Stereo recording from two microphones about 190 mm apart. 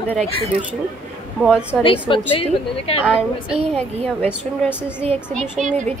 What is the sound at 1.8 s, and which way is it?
A woman's voice, 25° left (ahead or behind).